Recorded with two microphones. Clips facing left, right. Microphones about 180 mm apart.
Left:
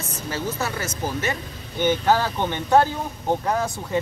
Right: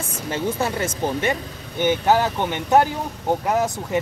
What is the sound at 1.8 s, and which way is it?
Speech, 15° right (ahead or behind).